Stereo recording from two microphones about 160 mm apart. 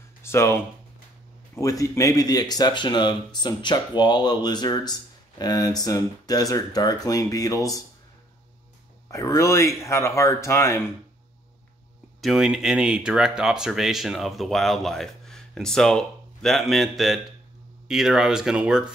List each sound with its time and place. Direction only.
0.2 s speech: 15° left (ahead or behind)
9.1 s speech: 20° left (ahead or behind)
12.2 s speech: centre (ahead or behind)